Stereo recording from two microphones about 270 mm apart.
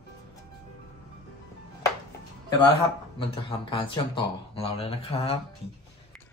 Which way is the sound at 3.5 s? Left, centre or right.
Centre.